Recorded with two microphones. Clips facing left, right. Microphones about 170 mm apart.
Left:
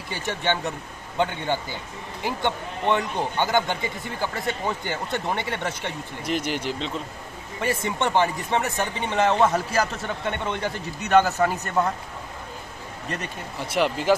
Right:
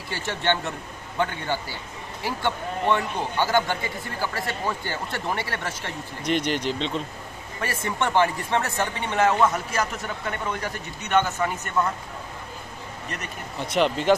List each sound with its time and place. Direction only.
0.1 s a man's voice: 10° left (ahead or behind)
6.2 s a man's voice: 5° left (ahead or behind)
9.4 s a man's voice: 30° left (ahead or behind)
11.1 s a man's voice: 40° left (ahead or behind)
13.7 s a man's voice: 10° left (ahead or behind)